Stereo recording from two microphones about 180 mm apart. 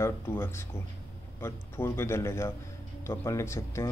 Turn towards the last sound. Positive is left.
turn(degrees=15)  # may be behind; listen again after turning